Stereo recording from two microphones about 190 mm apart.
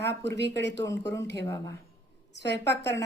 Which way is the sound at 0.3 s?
65° left (ahead or behind).